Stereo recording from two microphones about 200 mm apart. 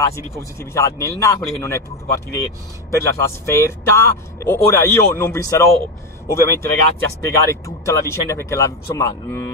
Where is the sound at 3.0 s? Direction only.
15° left (ahead or behind).